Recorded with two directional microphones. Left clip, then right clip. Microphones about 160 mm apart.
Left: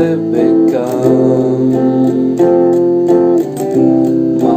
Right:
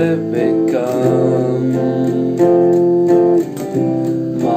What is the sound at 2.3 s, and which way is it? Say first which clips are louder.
Music: left 1 dB; 20° left (ahead or behind).